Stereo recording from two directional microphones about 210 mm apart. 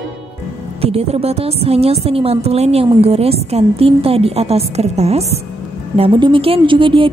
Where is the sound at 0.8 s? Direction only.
30° right (ahead or behind).